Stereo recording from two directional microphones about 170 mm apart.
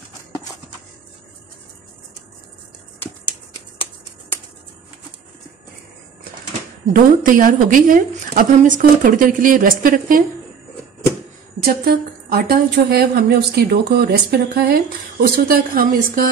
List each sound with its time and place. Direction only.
6.9 s speech: 55° right (ahead or behind)
11.6 s a woman's voice: 60° right (ahead or behind)